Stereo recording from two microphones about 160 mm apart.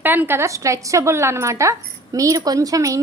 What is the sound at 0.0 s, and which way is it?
A woman's voice, 10° right (ahead or behind).